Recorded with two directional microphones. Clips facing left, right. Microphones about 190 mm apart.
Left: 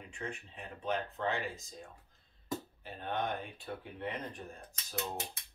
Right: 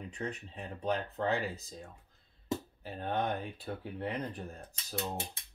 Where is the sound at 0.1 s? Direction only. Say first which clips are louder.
Right 1 dB; 40° right (ahead or behind).